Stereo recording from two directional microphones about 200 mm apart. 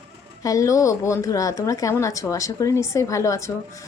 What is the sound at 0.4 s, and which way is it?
Speech, 15° left (ahead or behind).